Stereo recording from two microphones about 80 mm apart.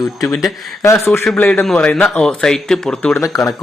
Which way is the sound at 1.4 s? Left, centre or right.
Left.